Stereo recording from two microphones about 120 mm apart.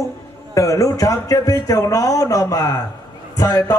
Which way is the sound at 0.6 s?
25° left (ahead or behind).